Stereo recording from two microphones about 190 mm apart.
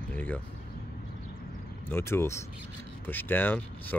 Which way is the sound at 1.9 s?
10° left (ahead or behind).